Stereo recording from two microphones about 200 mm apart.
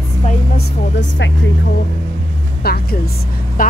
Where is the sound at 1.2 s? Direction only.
60° left (ahead or behind).